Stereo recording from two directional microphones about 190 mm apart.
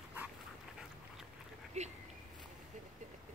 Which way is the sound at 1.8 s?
35° right (ahead or behind).